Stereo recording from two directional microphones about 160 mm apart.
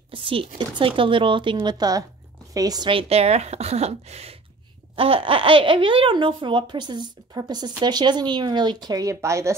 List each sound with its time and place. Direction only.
0.1 s a woman's voice: 35° right (ahead or behind); by 9.6 s 20° right (ahead or behind)